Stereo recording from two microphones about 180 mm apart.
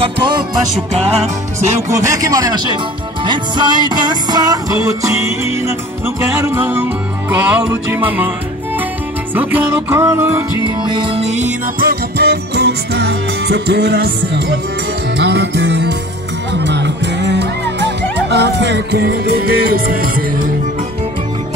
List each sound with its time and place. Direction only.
0.0 s music: 25° right (ahead or behind)
0.9 s music: 35° right (ahead or behind)
1.9 s music: 15° right (ahead or behind)
9.3 s music: 10° right (ahead or behind)
10.6 s music: 25° right (ahead or behind)
11.8 s music: 60° right (ahead or behind)